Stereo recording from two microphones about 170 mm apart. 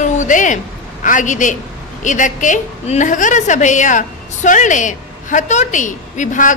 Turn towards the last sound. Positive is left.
turn(degrees=50)  # may be behind; listen again after turning